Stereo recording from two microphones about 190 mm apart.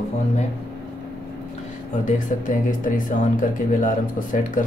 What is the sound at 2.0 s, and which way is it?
Speech, 45° left (ahead or behind).